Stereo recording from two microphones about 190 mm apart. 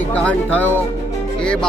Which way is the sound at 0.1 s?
5° left (ahead or behind).